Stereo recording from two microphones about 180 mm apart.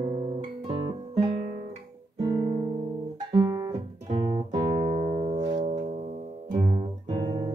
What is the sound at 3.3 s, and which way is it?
Music, 20° right (ahead or behind).